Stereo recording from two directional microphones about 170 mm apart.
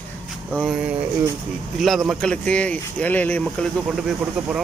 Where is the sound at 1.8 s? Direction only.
Centre (ahead or behind).